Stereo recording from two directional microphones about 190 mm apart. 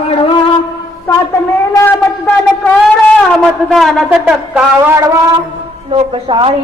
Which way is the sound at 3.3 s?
Centre (ahead or behind).